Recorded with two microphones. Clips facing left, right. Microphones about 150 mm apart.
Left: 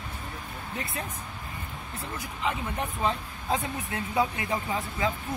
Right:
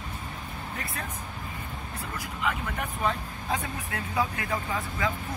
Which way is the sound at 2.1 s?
25° left (ahead or behind).